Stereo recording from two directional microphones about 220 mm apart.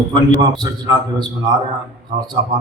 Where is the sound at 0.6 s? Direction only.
20° right (ahead or behind).